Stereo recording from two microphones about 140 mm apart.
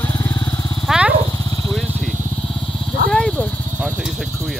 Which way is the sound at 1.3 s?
25° left (ahead or behind).